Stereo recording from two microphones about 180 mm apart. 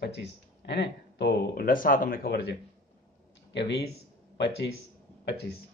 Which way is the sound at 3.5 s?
70° left (ahead or behind).